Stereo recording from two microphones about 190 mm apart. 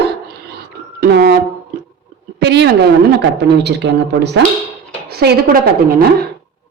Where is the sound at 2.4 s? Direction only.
65° right (ahead or behind).